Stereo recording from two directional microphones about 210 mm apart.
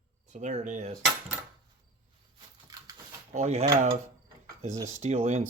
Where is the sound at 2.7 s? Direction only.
15° right (ahead or behind).